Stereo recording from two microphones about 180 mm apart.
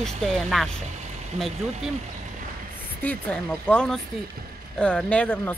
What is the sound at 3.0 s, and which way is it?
Speech, 5° left (ahead or behind).